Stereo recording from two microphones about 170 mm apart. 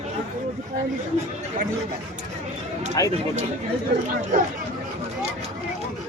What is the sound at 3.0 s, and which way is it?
Speech, 20° left (ahead or behind).